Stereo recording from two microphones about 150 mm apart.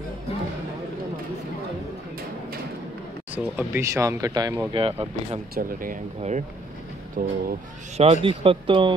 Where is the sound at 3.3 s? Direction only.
10° right (ahead or behind).